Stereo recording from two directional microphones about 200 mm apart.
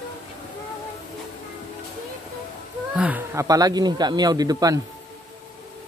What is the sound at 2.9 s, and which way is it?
Speech, 10° right (ahead or behind).